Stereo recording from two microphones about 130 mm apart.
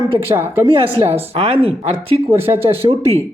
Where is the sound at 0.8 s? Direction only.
45° right (ahead or behind).